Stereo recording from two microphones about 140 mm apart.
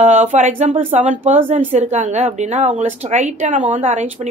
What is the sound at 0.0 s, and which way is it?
A woman's voice, 55° right (ahead or behind).